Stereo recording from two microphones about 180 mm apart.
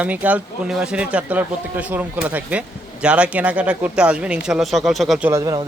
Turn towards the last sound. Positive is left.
turn(degrees=-20)  # may be behind; listen again after turning